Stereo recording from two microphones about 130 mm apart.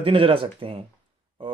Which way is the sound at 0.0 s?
45° right (ahead or behind).